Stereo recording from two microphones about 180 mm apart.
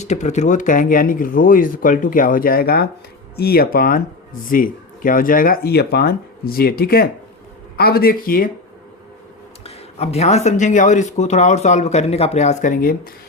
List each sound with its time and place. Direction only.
0.0 s speech: 40° left (ahead or behind)
9.6 s speech: 35° left (ahead or behind)